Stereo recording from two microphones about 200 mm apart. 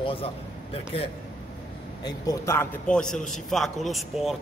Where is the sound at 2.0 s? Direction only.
15° left (ahead or behind).